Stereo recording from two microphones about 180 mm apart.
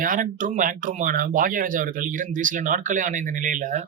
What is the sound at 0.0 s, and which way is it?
Speech, 50° right (ahead or behind).